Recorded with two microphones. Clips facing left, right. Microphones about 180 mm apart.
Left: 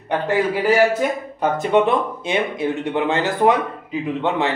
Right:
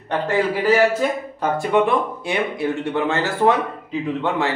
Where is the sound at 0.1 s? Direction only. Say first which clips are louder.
Left 1 dB; 10° left (ahead or behind).